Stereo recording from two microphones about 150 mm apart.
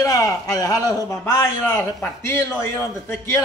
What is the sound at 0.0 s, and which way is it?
A man's voice, 20° left (ahead or behind).